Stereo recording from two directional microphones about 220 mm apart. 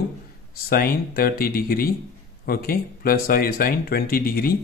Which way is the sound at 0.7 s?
40° left (ahead or behind).